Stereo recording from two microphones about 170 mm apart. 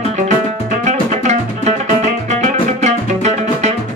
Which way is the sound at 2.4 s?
45° right (ahead or behind).